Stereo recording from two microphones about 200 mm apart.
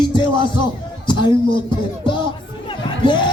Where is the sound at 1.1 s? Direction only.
25° left (ahead or behind).